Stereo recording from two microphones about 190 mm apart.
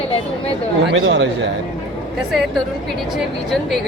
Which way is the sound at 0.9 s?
85° right.